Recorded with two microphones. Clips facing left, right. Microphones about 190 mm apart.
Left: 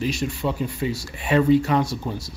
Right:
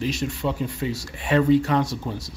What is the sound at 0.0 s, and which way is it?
Speech, 5° left (ahead or behind).